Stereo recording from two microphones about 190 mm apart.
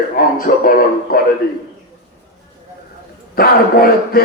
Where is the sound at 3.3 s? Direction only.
50° left (ahead or behind).